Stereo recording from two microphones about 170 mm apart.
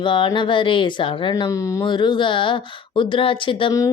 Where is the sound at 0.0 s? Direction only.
30° left (ahead or behind).